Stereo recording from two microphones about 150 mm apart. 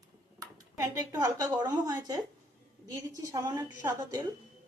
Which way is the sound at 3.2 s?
25° right (ahead or behind).